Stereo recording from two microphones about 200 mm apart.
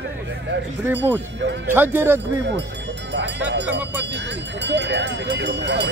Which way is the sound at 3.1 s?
60° right (ahead or behind).